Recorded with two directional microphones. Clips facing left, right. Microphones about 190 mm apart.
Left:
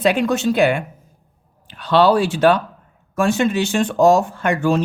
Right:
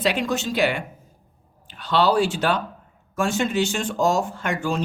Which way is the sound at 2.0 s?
55° left (ahead or behind).